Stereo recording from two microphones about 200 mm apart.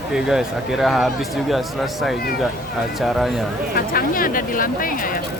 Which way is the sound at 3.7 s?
45° left (ahead or behind).